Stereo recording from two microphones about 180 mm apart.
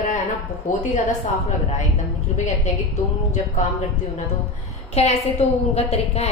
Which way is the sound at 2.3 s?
40° left (ahead or behind).